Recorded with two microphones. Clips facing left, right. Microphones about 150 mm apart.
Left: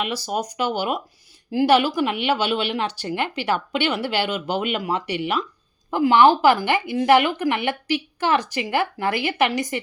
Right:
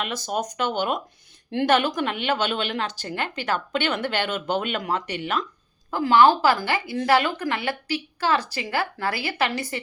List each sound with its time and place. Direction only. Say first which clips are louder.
0.0 s a woman's voice: left 2 dB; 10° left (ahead or behind)